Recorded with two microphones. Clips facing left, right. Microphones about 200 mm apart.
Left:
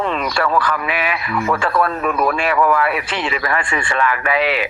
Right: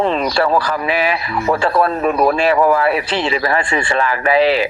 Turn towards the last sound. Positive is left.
turn(degrees=-35)  # may be behind; listen again after turning